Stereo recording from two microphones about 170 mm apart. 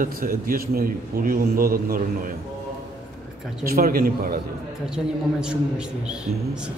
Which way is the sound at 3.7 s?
60° right (ahead or behind).